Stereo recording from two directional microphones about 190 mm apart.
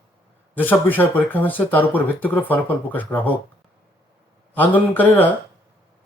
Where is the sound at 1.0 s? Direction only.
10° left (ahead or behind).